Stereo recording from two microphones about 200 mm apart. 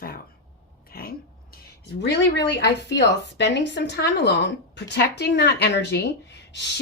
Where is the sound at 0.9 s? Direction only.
50° left (ahead or behind).